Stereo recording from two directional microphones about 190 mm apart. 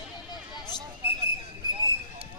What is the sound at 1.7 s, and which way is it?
Clip-clop, 20° right (ahead or behind).